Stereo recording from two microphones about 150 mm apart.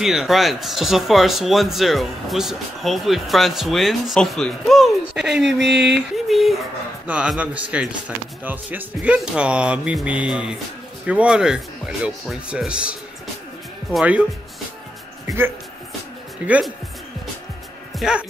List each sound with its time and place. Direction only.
0.0 s speech: centre (ahead or behind)
13.9 s speech: 10° right (ahead or behind)
15.2 s speech: 15° right (ahead or behind)
17.9 s speech: 5° right (ahead or behind)